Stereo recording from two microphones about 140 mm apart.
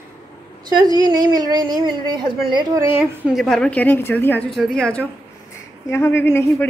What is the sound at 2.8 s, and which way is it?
Speech, 15° right (ahead or behind).